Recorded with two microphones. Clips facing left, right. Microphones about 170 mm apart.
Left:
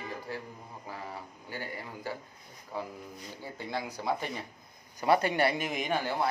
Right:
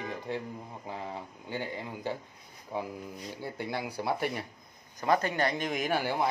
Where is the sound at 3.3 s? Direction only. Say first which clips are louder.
Right 1 dB; 15° right (ahead or behind).